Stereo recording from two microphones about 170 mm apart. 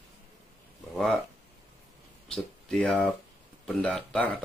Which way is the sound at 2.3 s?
5° left (ahead or behind).